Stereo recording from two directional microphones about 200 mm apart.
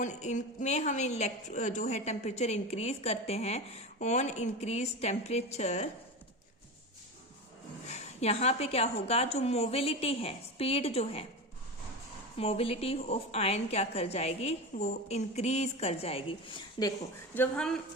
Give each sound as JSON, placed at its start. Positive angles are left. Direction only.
{"t": 0.0, "sound": "a woman's voice", "side_deg": 35}
{"t": 7.9, "sound": "a woman's voice", "side_deg": 35}
{"t": 12.4, "sound": "a woman's voice", "side_deg": 30}
{"t": 17.3, "sound": "speech", "side_deg": 5}